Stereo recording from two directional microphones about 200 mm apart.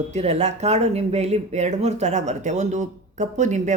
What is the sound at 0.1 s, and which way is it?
Speech, 35° right (ahead or behind).